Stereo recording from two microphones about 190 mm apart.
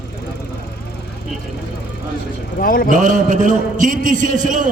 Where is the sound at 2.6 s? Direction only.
50° left (ahead or behind).